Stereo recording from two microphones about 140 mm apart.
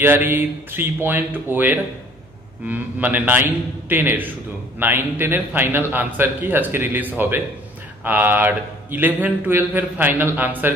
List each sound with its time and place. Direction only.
0.0 s a man's voice: 15° right (ahead or behind)